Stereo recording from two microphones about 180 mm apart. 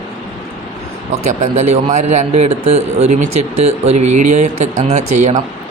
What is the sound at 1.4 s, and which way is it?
A man's voice, 40° right (ahead or behind).